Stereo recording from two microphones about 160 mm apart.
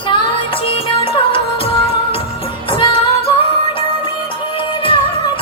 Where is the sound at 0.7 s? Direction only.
35° left (ahead or behind).